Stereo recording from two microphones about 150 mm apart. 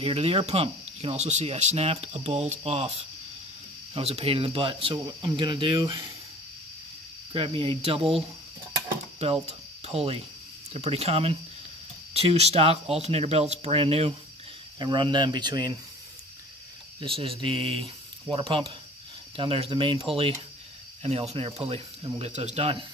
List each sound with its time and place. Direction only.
0.0 s speech: 40° right (ahead or behind)
3.9 s speech: 40° right (ahead or behind)
7.3 s speech: 35° right (ahead or behind)
9.2 s speech: 45° right (ahead or behind)
14.8 s speech: 30° right (ahead or behind)
17.0 s speech: 40° right (ahead or behind)
21.0 s speech: 45° right (ahead or behind)